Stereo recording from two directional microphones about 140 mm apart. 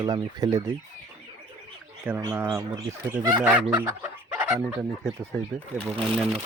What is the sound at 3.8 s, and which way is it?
Chicken, 15° right (ahead or behind).